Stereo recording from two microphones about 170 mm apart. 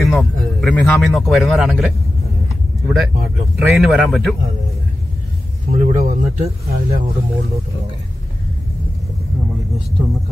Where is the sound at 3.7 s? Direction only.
Centre (ahead or behind).